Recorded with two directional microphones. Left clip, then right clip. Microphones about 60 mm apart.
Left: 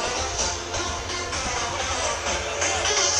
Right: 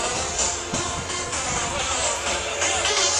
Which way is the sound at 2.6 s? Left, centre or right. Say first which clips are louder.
Right 1 dB; left.